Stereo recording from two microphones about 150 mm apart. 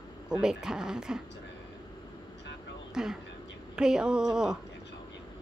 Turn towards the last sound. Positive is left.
turn(degrees=-5)  # may be behind; listen again after turning